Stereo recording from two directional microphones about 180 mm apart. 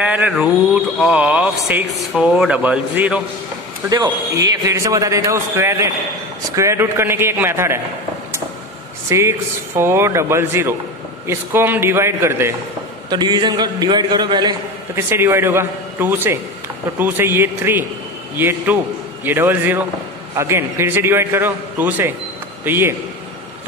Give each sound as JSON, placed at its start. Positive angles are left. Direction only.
{"t": 0.0, "sound": "speech", "side_deg": -10}
{"t": 3.9, "sound": "speech", "side_deg": -20}
{"t": 9.1, "sound": "a man's voice", "side_deg": -15}
{"t": 15.0, "sound": "speech", "side_deg": -10}